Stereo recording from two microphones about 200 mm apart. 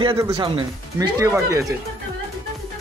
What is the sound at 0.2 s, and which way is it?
Speech, 20° right (ahead or behind).